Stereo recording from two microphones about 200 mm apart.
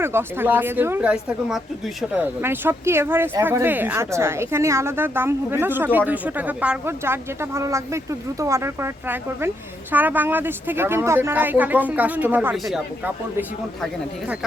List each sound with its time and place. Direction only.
0.0 s speech: 10° right (ahead or behind)